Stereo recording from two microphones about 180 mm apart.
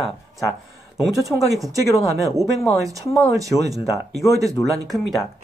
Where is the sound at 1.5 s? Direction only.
20° right (ahead or behind).